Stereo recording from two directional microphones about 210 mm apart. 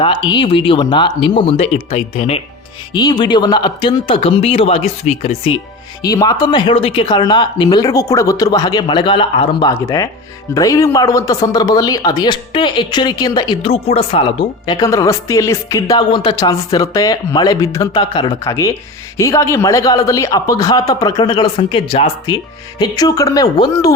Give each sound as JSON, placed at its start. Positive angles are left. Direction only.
{"t": 0.0, "sound": "speech", "side_deg": 20}
{"t": 6.1, "sound": "a man's voice", "side_deg": 20}